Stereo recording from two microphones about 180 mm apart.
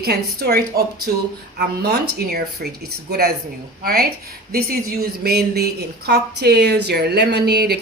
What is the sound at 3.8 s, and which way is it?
A woman's voice, 60° right (ahead or behind).